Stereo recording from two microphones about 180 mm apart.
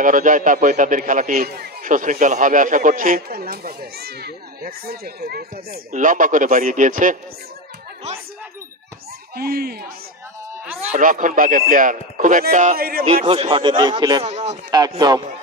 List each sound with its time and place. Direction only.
0.0 s a man's voice: 45° right (ahead or behind)
9.3 s speech: 60° right (ahead or behind)
10.9 s a man's voice: 45° right (ahead or behind)
13.0 s speech: 35° right (ahead or behind)
14.2 s speech: 35° right (ahead or behind)
14.7 s speech: 20° right (ahead or behind)